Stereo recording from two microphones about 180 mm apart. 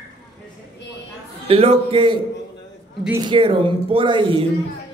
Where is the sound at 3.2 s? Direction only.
30° right (ahead or behind).